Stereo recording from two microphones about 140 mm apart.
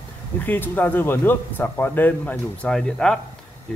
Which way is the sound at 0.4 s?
15° left (ahead or behind).